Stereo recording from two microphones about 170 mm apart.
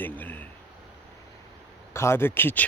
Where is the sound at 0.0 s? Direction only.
10° left (ahead or behind).